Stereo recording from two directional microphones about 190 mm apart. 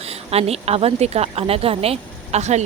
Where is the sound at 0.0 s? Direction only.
30° right (ahead or behind).